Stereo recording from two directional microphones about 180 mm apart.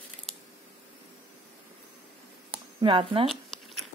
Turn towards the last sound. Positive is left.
turn(degrees=-30)  # may be behind; listen again after turning